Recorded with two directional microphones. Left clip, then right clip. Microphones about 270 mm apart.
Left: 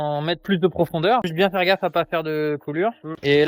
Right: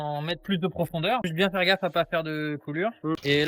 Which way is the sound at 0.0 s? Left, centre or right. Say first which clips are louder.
Left 7 dB; left.